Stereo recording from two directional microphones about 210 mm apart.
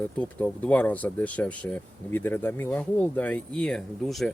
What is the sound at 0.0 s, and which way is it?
Speech, 5° left (ahead or behind).